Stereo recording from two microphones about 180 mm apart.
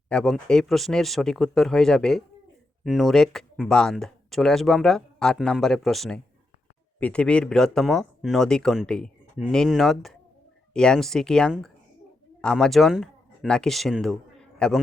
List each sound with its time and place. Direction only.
0.1 s speech: 5° left (ahead or behind)